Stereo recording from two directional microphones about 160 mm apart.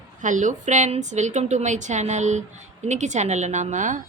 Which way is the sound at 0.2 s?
50° right (ahead or behind).